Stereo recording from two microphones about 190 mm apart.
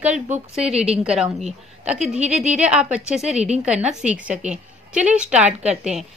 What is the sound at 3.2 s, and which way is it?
Speech, 35° right (ahead or behind).